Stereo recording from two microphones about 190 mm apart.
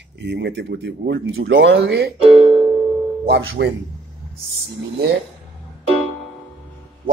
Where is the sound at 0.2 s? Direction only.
65° right (ahead or behind).